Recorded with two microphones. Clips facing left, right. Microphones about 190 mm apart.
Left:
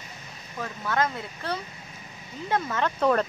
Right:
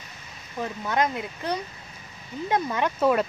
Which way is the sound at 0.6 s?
15° right (ahead or behind).